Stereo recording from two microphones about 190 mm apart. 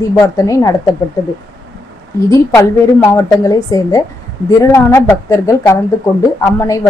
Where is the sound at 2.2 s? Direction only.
15° left (ahead or behind).